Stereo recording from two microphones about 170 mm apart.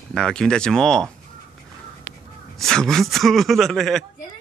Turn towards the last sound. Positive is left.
turn(degrees=0)  # may be behind; listen again after turning